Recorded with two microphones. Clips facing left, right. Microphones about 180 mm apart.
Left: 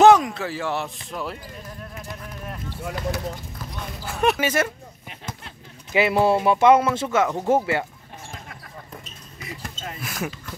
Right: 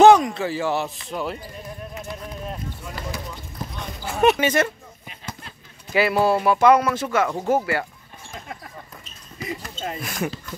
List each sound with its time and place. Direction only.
0.0 s speech: centre (ahead or behind)
2.7 s speech: 70° left (ahead or behind)
4.0 s speech: centre (ahead or behind)
5.9 s speech: 20° left (ahead or behind)
9.4 s basketball bounce: 30° right (ahead or behind)
9.9 s speech: 5° left (ahead or behind)